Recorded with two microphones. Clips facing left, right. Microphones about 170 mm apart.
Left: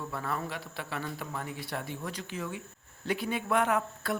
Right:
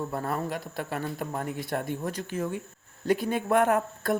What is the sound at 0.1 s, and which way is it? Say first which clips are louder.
A man's voice: right 5 dB; 45° right (ahead or behind).